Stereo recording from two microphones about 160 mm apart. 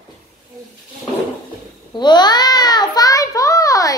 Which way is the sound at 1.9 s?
30° left (ahead or behind).